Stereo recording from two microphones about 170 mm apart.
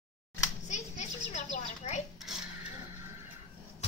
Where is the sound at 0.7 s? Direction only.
45° left (ahead or behind).